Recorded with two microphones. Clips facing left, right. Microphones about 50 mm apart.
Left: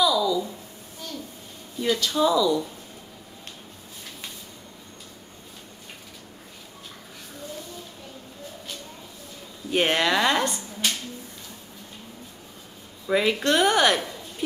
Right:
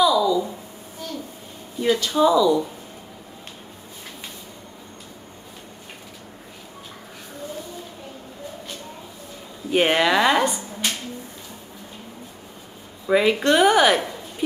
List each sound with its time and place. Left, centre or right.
0.0 s a sound: centre
1.8 s speech: centre
9.7 s speech: centre
13.0 s speech: centre